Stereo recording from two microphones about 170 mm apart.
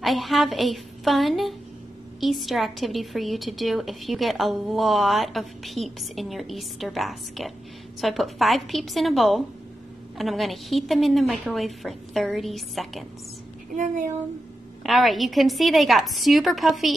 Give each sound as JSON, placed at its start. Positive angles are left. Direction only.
{"t": 0.0, "sound": "a woman's voice", "side_deg": 0}
{"t": 13.7, "sound": "speech", "side_deg": -45}
{"t": 14.8, "sound": "a woman's voice", "side_deg": 0}